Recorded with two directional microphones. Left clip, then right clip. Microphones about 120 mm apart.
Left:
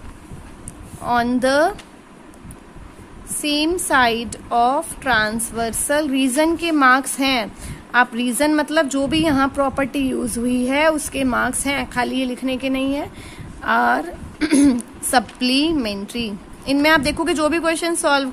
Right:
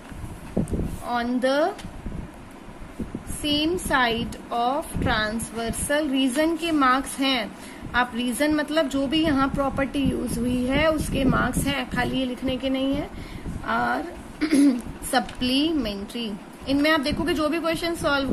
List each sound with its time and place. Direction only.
1.0 s speech: 70° left (ahead or behind)
3.4 s a woman's voice: 55° left (ahead or behind)
13.7 s a woman's voice: 75° left (ahead or behind)